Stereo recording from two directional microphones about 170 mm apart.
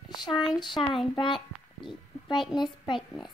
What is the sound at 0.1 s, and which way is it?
Speech, 25° left (ahead or behind).